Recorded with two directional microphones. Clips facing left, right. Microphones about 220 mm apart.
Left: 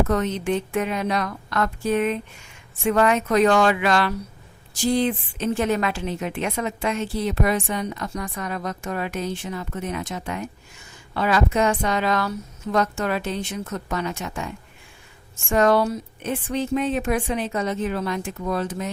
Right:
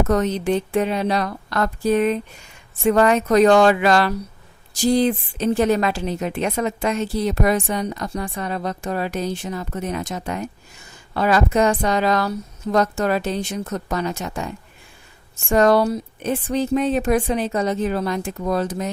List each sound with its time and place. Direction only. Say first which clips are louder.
0.1 s a woman's voice: right 3 dB; 40° right (ahead or behind)